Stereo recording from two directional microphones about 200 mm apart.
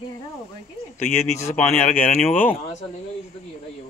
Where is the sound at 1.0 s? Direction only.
10° left (ahead or behind).